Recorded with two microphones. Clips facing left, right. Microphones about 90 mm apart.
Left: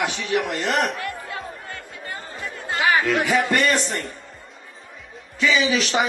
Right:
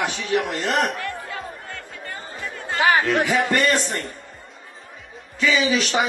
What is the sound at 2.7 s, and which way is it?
Speech, 40° right (ahead or behind).